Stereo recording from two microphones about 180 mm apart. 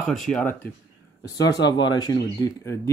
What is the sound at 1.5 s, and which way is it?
Speech, 25° left (ahead or behind).